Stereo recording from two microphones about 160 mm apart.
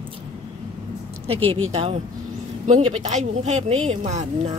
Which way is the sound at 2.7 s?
45° right (ahead or behind).